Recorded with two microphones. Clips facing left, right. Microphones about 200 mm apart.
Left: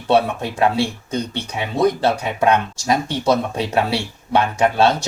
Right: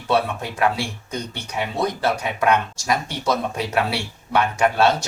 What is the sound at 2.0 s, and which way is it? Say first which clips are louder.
Speech: left 3 dB; 25° left (ahead or behind).